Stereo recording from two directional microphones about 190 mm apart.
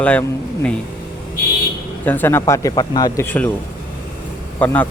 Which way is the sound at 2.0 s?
10° left (ahead or behind).